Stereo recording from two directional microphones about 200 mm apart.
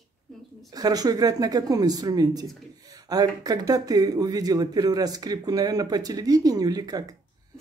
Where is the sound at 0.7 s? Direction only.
20° right (ahead or behind).